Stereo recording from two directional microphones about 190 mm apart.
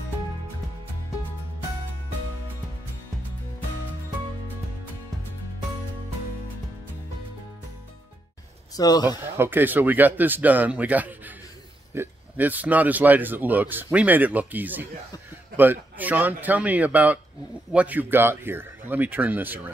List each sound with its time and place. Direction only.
8.7 s a man's voice: 20° left (ahead or behind)
9.4 s speech: 10° right (ahead or behind)